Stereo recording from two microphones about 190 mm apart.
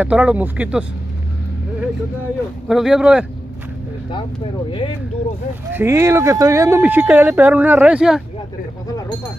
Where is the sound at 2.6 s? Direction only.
Centre (ahead or behind).